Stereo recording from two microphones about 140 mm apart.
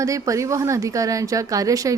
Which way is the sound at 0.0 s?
25° right (ahead or behind).